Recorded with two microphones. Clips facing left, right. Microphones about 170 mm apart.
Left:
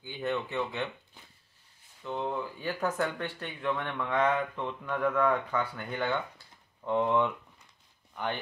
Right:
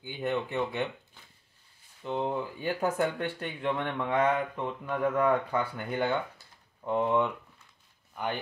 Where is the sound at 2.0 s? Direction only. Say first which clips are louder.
Right 2 dB; 15° right (ahead or behind).